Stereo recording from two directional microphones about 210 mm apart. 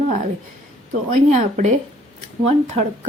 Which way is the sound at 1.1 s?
35° right (ahead or behind).